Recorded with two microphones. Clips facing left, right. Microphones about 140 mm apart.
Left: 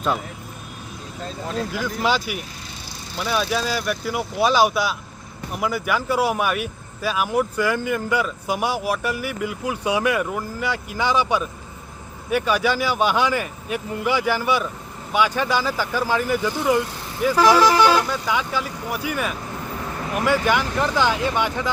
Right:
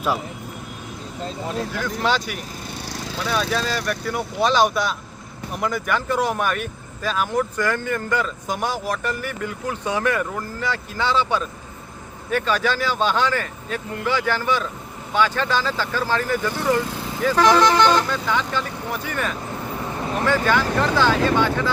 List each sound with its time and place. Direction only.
1.5 s speech: centre (ahead or behind)